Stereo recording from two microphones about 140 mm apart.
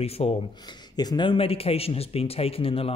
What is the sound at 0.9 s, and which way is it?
Speech, 30° left (ahead or behind).